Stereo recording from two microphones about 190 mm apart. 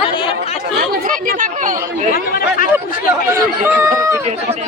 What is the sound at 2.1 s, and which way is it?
Speech, 50° left (ahead or behind).